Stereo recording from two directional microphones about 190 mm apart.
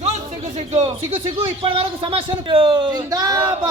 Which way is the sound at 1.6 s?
25° right (ahead or behind).